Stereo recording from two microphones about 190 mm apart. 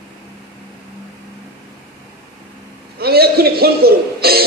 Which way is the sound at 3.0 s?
55° right (ahead or behind).